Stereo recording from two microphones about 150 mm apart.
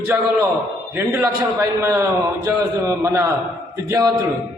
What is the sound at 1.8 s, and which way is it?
A man's voice, 20° right (ahead or behind).